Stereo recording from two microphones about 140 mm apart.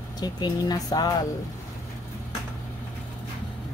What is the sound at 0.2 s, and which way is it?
Speech, 30° left (ahead or behind).